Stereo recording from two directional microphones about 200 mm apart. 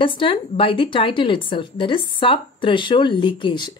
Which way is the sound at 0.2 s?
25° left (ahead or behind).